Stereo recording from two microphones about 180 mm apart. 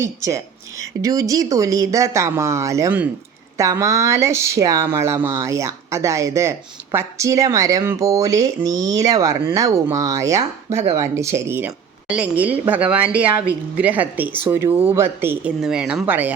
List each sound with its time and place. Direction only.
0.0 s a woman's voice: 15° right (ahead or behind)